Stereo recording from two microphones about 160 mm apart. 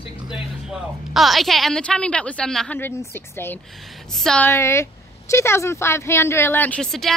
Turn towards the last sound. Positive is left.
turn(degrees=0)  # may be behind; listen again after turning